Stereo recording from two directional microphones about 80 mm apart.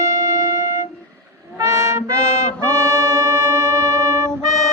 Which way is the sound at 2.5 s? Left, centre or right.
Right.